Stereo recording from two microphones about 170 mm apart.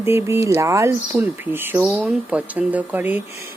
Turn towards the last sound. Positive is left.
turn(degrees=-10)  # may be behind; listen again after turning